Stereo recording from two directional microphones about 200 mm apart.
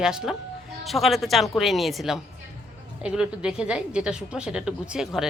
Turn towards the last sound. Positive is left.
turn(degrees=-5)  # may be behind; listen again after turning